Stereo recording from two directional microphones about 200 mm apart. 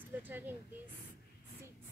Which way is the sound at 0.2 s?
10° right (ahead or behind).